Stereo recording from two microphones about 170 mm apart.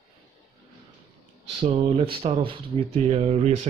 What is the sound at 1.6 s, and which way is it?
Speech, 35° right (ahead or behind).